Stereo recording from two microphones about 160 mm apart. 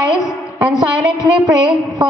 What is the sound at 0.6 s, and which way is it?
Speech, 25° right (ahead or behind).